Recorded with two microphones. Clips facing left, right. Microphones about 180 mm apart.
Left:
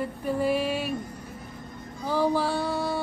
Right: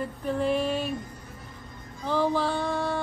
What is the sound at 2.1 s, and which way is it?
Music, 10° left (ahead or behind).